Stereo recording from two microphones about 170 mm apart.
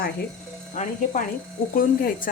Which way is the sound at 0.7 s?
45° left (ahead or behind).